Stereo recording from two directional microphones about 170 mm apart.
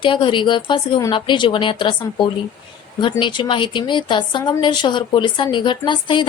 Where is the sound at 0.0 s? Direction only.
30° left (ahead or behind).